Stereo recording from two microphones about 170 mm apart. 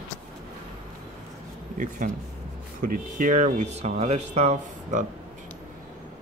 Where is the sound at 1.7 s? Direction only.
50° right (ahead or behind).